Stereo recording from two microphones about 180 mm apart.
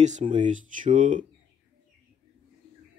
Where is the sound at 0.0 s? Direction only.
40° right (ahead or behind).